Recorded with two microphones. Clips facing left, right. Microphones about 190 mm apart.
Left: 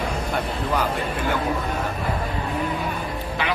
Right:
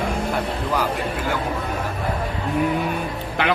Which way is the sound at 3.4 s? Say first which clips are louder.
Right 5 dB; 60° right (ahead or behind).